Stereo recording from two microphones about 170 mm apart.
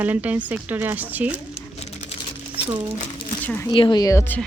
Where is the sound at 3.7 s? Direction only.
25° left (ahead or behind).